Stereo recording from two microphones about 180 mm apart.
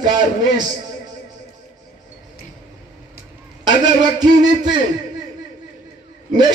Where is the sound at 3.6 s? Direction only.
25° right (ahead or behind).